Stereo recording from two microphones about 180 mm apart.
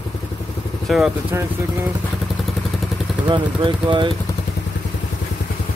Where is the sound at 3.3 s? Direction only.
25° right (ahead or behind).